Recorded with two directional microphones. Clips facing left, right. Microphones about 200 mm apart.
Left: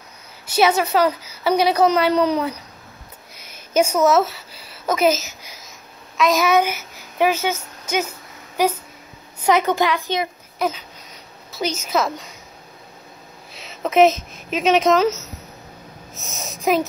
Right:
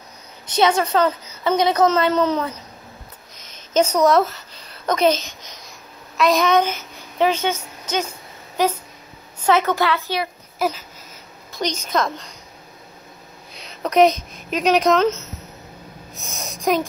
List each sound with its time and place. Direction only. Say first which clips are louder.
0.5 s a woman's voice: even; 10° left (ahead or behind)
3.3 s a sound: even; 10° left (ahead or behind)
8.6 s a woman's voice: left 1 dB; 10° left (ahead or behind)
10.6 s a woman's voice: even; 5° right (ahead or behind)
11.5 s a woman's voice: left 1 dB; 5° left (ahead or behind)
13.6 s speech: even; 5° left (ahead or behind)
16.2 s a woman's voice: even; centre (ahead or behind)